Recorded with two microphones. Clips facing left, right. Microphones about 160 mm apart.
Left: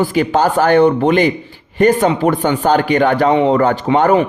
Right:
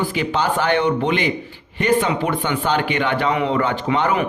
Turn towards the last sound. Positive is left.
turn(degrees=45)  # may be behind; listen again after turning